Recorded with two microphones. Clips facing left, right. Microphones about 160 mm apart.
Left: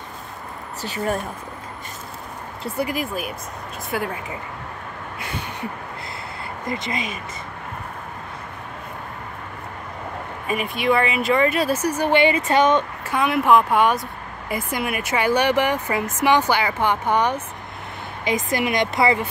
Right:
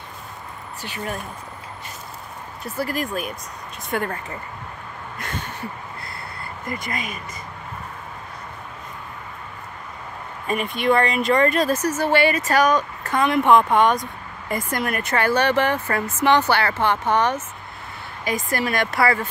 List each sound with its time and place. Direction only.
0.8 s speech: 40° left (ahead or behind)
2.6 s speech: 15° left (ahead or behind)
3.1 s speech: 5° left (ahead or behind)
6.7 s speech: 20° left (ahead or behind)
10.4 s speech: 5° left (ahead or behind); by 12.8 s 25° left (ahead or behind)
13.0 s speech: 5° left (ahead or behind)